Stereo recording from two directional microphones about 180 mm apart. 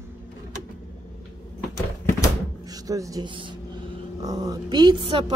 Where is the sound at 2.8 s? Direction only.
20° right (ahead or behind).